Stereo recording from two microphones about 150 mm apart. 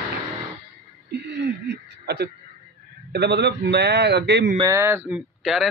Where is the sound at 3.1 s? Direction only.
90° right.